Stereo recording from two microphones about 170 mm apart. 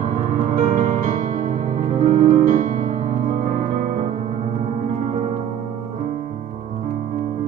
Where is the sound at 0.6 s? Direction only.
50° right (ahead or behind).